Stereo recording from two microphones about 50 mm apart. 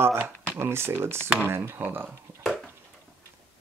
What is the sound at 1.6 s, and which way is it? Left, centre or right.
Speech, right.